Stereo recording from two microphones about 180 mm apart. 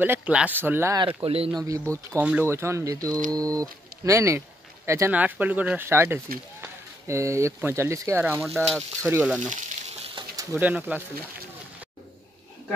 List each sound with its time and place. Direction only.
0.0 s speech: 10° right (ahead or behind)
1.0 s speech: 30° right (ahead or behind)
1.6 s speech: 15° right (ahead or behind)
9.5 s a sound: 40° right (ahead or behind)
10.5 s speech: 10° right (ahead or behind)